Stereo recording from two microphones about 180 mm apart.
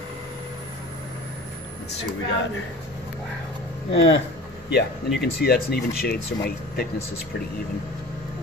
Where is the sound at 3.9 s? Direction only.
85° left.